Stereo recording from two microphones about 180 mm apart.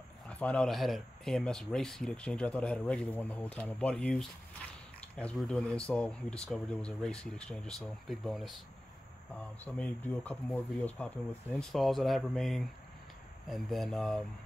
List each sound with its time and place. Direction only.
0.3 s speech: 5° left (ahead or behind)
9.7 s speech: 10° left (ahead or behind)